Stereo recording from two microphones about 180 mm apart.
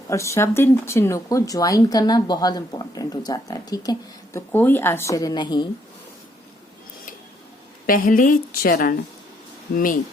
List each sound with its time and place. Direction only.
0.1 s speech: 15° left (ahead or behind)
7.9 s a woman's voice: 50° left (ahead or behind)